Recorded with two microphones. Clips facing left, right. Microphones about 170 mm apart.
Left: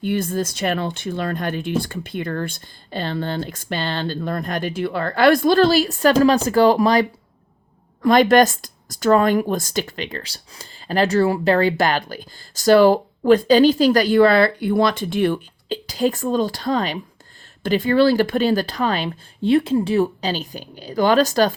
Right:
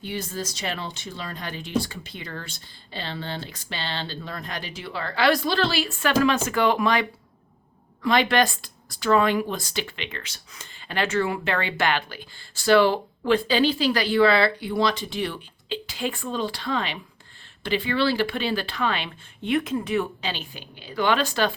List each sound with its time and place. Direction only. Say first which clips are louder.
0.0 s speech: left 9 dB; 55° left (ahead or behind)